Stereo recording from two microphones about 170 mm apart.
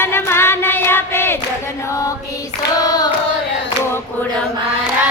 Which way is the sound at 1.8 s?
20° left (ahead or behind).